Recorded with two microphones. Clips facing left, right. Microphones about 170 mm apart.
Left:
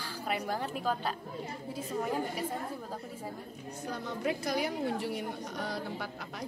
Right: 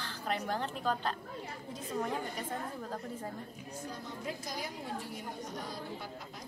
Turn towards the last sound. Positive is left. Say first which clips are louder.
# left 5 dB
turn(degrees=70)  # may be behind; listen again after turning